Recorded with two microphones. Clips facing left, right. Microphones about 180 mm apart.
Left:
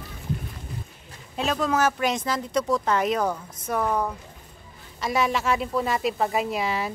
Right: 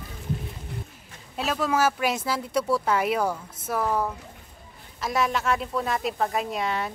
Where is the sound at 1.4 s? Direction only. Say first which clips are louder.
Left 1 dB; 5° right (ahead or behind).